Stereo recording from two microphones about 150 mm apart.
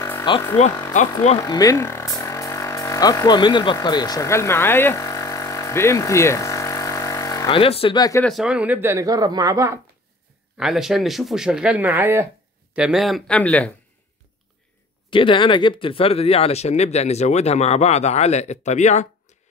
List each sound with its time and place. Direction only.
0.3 s speech: 30° left (ahead or behind)
1.4 s music: 25° left (ahead or behind)
7.4 s speech: 40° left (ahead or behind)
8.2 s speech: centre (ahead or behind); by 9.8 s 20° right (ahead or behind)
10.6 s speech: centre (ahead or behind)
12.7 s speech: 5° right (ahead or behind)
15.0 s speech: 35° left (ahead or behind); by 19.0 s 50° left (ahead or behind)